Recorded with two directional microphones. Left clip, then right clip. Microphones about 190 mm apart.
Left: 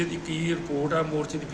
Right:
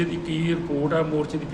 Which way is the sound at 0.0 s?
10° left (ahead or behind).